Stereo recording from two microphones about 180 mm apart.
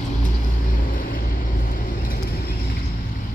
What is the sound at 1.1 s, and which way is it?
Vehicle, 55° left (ahead or behind).